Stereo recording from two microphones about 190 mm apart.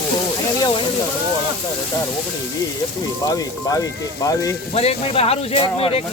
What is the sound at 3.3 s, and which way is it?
A man's voice, 20° left (ahead or behind).